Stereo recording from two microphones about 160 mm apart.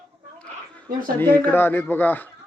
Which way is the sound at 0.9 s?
60° right (ahead or behind).